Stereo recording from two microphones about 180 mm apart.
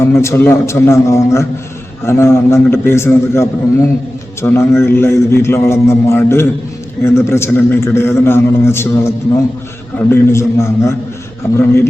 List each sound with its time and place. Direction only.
0.0 s a man's voice: 15° left (ahead or behind)